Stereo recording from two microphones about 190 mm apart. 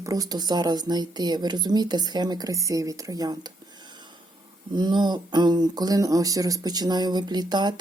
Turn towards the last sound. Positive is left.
turn(degrees=-20)  # may be behind; listen again after turning